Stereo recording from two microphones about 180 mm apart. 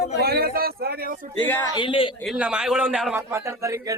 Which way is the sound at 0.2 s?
60° right (ahead or behind).